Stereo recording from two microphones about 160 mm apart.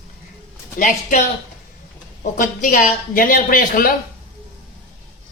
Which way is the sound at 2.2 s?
55° left (ahead or behind).